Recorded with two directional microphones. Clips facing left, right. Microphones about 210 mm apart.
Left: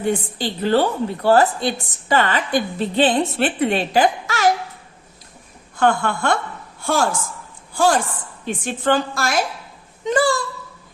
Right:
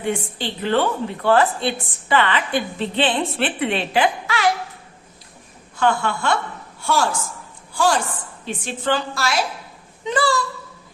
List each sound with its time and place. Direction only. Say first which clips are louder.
0.0 s a woman's voice: left 3 dB; 40° left (ahead or behind)
5.8 s a woman's voice: left 2 dB; 45° left (ahead or behind)
7.8 s a woman's voice: left 2 dB; 45° left (ahead or behind)